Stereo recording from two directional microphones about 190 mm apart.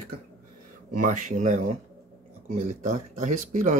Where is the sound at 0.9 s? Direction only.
45° right (ahead or behind).